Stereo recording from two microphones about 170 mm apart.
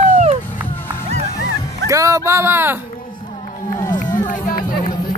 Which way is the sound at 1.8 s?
20° right (ahead or behind).